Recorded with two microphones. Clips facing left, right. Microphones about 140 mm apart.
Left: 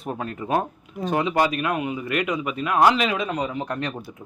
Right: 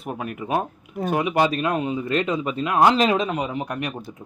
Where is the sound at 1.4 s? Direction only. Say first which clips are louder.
Right 2 dB; 30° right (ahead or behind).